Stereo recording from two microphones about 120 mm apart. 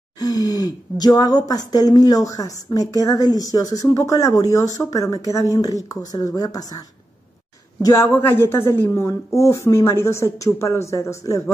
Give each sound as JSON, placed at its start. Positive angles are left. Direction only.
{"t": 0.2, "sound": "a woman's voice", "side_deg": 30}
{"t": 7.8, "sound": "a woman's voice", "side_deg": 25}